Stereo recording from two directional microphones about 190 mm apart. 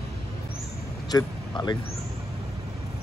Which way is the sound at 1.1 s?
20° left (ahead or behind).